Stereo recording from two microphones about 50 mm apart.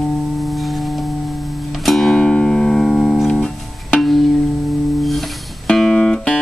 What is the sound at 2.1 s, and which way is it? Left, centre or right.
Music, centre.